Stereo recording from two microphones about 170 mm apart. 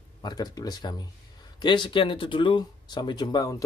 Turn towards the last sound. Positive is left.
turn(degrees=25)  # may be behind; listen again after turning